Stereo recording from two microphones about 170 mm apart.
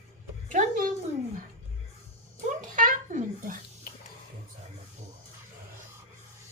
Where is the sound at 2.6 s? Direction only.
50° right (ahead or behind).